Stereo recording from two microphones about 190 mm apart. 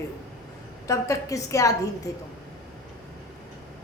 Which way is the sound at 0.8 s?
15° left (ahead or behind).